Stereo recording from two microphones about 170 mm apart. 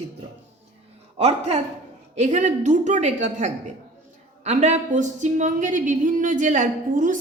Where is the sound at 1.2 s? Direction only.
40° right (ahead or behind).